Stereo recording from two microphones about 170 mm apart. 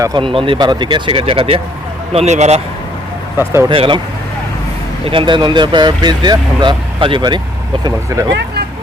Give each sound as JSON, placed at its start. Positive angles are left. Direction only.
{"t": 0.0, "sound": "speech", "side_deg": -25}
{"t": 3.3, "sound": "speech", "side_deg": -15}
{"t": 3.7, "sound": "speech", "side_deg": -30}
{"t": 5.0, "sound": "speech", "side_deg": -30}